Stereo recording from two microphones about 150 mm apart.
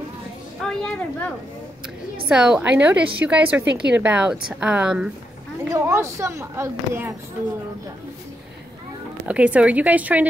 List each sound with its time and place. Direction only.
0.6 s children playing: 5° left (ahead or behind)
2.2 s a woman's voice: 5° right (ahead or behind)
5.7 s a woman's voice: 20° right (ahead or behind)
9.3 s a woman's voice: 10° right (ahead or behind)